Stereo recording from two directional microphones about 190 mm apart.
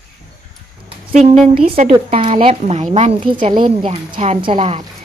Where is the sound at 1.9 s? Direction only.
25° right (ahead or behind).